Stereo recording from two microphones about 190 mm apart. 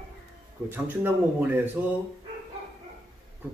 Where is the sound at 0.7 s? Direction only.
10° right (ahead or behind).